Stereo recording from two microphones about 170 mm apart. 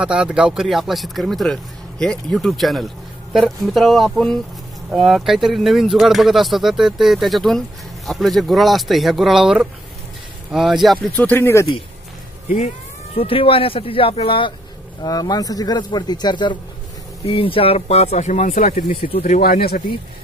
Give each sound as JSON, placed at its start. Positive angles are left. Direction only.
{"t": 0.0, "sound": "speech", "side_deg": -5}
{"t": 11.0, "sound": "speech", "side_deg": 10}
{"t": 12.5, "sound": "speech", "side_deg": 35}